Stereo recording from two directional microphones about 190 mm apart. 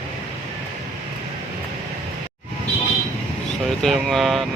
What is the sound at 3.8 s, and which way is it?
Speech, centre (ahead or behind).